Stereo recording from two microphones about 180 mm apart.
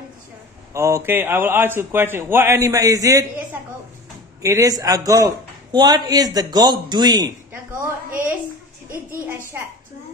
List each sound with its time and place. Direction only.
0.7 s a man's voice: 15° right (ahead or behind)
4.4 s speech: 20° right (ahead or behind)